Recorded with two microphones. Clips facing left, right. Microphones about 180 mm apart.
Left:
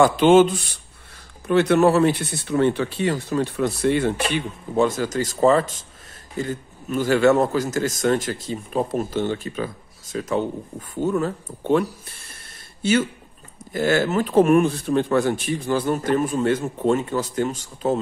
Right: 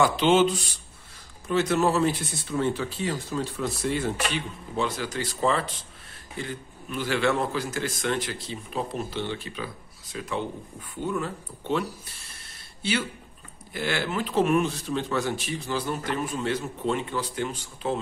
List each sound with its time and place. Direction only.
0.0 s speech: 50° left (ahead or behind)
1.5 s speech: 60° left (ahead or behind)
4.3 s speech: 45° left (ahead or behind)